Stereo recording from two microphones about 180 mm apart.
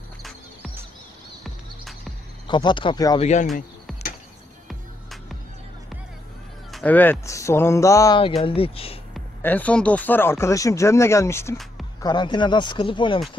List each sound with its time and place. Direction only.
1.4 s music: centre (ahead or behind)
2.4 s speech: 25° left (ahead or behind)
3.2 s speech: 40° left (ahead or behind)
6.7 s speech: 10° left (ahead or behind)
8.4 s speech: 30° left (ahead or behind)
9.4 s speech: 10° left (ahead or behind)
12.0 s speech: 25° left (ahead or behind)